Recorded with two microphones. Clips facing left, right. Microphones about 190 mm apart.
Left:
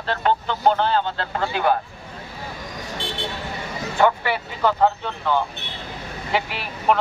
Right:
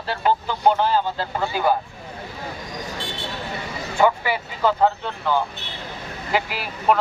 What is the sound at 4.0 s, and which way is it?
Speech, 5° right (ahead or behind).